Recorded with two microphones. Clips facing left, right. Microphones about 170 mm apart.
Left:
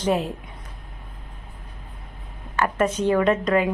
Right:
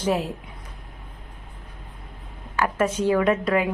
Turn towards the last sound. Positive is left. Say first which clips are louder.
# left 1 dB
turn(degrees=-10)  # may be behind; listen again after turning